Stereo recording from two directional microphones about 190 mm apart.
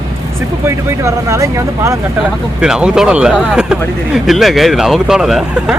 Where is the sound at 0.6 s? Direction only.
15° right (ahead or behind).